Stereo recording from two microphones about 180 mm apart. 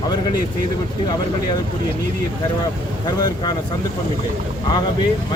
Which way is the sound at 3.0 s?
25° left (ahead or behind).